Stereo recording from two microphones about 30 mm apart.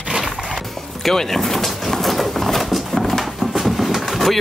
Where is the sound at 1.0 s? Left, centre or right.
Centre.